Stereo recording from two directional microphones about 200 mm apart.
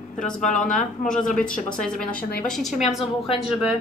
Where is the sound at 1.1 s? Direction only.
5° left (ahead or behind).